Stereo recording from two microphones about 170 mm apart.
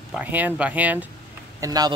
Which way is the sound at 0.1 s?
10° right (ahead or behind).